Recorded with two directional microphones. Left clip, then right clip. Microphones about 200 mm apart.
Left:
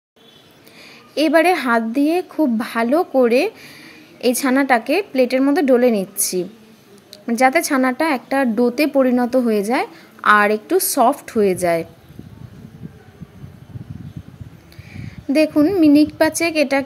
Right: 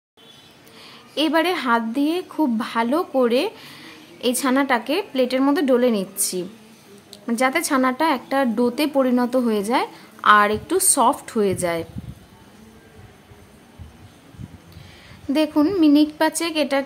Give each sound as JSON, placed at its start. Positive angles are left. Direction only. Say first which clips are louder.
{"t": 1.1, "sound": "a woman's voice", "louder": "left 5 dB", "side_deg": 15}
{"t": 15.3, "sound": "a woman's voice", "louder": "left 4 dB", "side_deg": 15}